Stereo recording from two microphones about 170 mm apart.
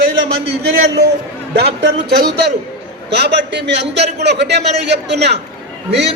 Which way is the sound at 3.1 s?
85° right.